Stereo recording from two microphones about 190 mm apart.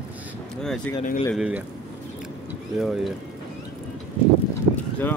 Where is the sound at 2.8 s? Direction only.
Centre (ahead or behind).